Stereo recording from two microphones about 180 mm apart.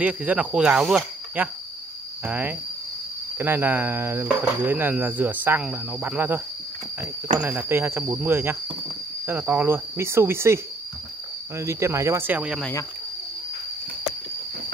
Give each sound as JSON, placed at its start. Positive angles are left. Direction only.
{"t": 0.0, "sound": "speech", "side_deg": -10}